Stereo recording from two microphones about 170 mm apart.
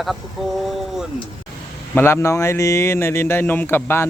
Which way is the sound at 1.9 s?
15° left (ahead or behind).